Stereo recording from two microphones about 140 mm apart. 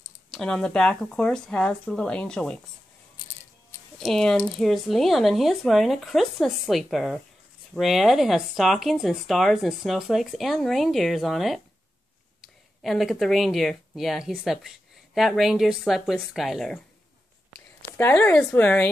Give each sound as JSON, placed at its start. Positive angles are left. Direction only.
{"t": 0.3, "sound": "speech", "side_deg": 5}
{"t": 3.2, "sound": "music", "side_deg": 25}
{"t": 4.0, "sound": "speech", "side_deg": 5}
{"t": 12.8, "sound": "speech", "side_deg": 0}
{"t": 17.8, "sound": "a woman's voice", "side_deg": 15}